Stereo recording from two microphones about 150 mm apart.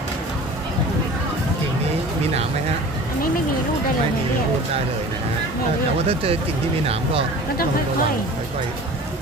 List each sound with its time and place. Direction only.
6.1 s speech: 40° right (ahead or behind)